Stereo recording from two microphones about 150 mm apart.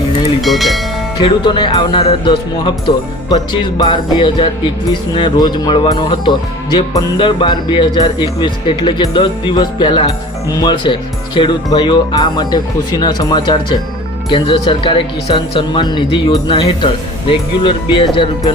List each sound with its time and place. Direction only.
0.4 s speech: centre (ahead or behind)
1.2 s speech: 30° left (ahead or behind)